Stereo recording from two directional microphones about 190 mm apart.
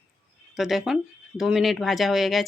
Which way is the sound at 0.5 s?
Centre (ahead or behind).